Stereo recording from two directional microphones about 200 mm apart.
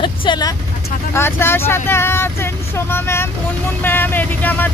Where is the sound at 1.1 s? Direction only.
10° left (ahead or behind).